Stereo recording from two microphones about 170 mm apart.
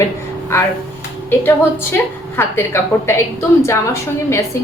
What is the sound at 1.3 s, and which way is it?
A woman's voice, 15° left (ahead or behind).